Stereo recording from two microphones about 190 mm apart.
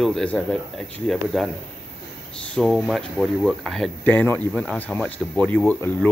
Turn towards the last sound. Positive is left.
turn(degrees=10)  # may be behind; listen again after turning